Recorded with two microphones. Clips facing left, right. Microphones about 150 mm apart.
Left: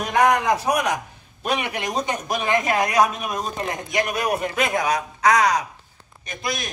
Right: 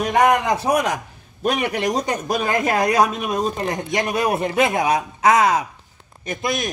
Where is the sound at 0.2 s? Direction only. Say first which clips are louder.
Even; 30° right (ahead or behind).